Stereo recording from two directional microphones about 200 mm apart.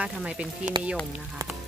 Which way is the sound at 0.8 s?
20° right (ahead or behind).